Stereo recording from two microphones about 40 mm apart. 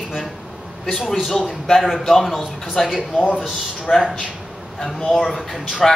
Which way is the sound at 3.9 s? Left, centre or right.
Left.